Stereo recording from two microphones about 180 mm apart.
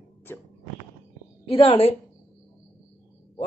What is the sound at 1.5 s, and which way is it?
Speech, 30° left (ahead or behind).